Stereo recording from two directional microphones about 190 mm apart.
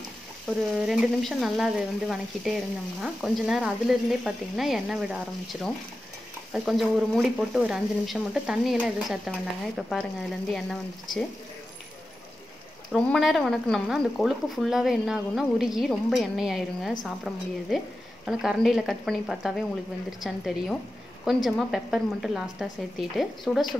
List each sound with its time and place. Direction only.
0.5 s speech: centre (ahead or behind)
12.9 s speech: centre (ahead or behind)